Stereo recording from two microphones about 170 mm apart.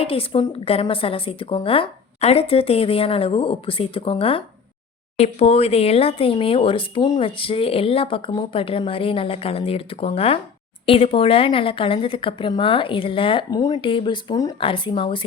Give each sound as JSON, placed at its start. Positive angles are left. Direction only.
{"t": 0.0, "sound": "speech", "side_deg": 35}